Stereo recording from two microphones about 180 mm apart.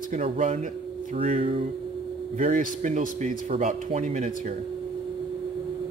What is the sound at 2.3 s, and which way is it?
Speech, 45° right (ahead or behind).